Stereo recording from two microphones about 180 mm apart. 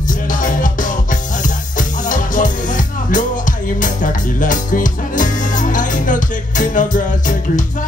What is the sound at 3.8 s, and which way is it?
Music, 45° left (ahead or behind).